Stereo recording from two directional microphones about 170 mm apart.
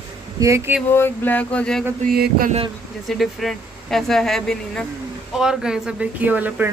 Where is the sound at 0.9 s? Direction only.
10° left (ahead or behind).